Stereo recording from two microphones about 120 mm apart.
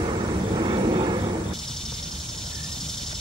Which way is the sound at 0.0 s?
40° right (ahead or behind).